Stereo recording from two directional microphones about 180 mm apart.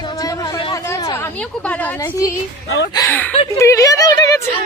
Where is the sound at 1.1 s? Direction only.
10° left (ahead or behind).